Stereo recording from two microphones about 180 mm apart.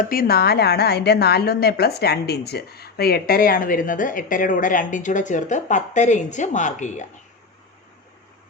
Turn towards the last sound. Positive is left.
turn(degrees=45)  # may be behind; listen again after turning